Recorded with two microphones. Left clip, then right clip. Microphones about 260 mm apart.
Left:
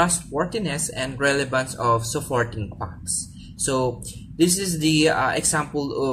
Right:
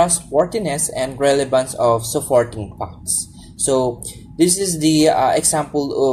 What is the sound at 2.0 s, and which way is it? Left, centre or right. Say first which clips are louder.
Speech: right 8 dB; centre.